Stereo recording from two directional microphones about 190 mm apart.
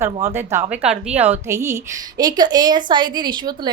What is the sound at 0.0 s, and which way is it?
A woman's voice, 15° right (ahead or behind).